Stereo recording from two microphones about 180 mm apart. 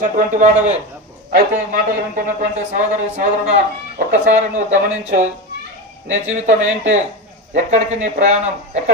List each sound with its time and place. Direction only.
0.0 s a man's voice: 45° right (ahead or behind)
1.3 s a man's voice: 55° right (ahead or behind)